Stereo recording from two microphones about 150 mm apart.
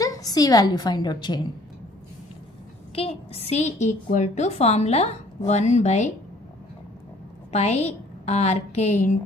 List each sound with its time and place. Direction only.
0.0 s a woman's voice: 25° left (ahead or behind)
2.9 s a woman's voice: 40° left (ahead or behind)
7.5 s a woman's voice: 45° left (ahead or behind)